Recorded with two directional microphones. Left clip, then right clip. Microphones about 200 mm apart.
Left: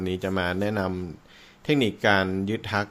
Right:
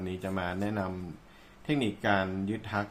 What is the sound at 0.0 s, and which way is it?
Speech, 45° left (ahead or behind).